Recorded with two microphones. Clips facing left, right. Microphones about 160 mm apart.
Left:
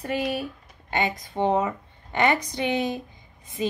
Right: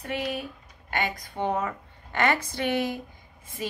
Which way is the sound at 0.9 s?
20° left (ahead or behind).